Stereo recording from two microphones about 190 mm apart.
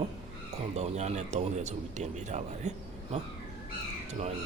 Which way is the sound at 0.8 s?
35° right (ahead or behind).